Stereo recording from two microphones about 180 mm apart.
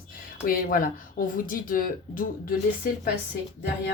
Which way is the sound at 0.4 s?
50° left (ahead or behind).